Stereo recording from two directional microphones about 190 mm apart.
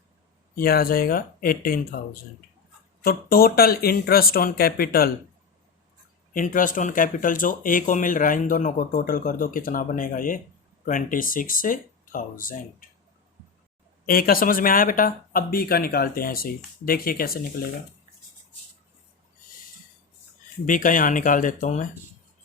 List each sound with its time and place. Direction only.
0.5 s speech: 50° left (ahead or behind)
3.0 s speech: 50° left (ahead or behind)
6.3 s speech: 45° left (ahead or behind)
14.1 s speech: 50° left (ahead or behind)
20.7 s speech: 45° left (ahead or behind)